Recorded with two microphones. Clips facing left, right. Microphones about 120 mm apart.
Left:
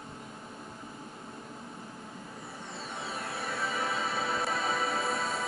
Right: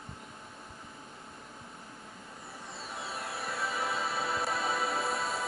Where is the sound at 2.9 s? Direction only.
Centre (ahead or behind).